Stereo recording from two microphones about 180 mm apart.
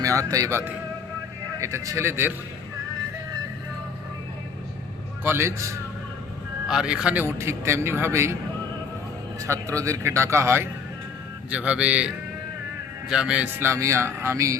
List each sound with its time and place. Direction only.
0.0 s a man's voice: 20° right (ahead or behind)
5.2 s a man's voice: 15° right (ahead or behind)
6.7 s a man's voice: 5° right (ahead or behind)
9.4 s a man's voice: 15° right (ahead or behind)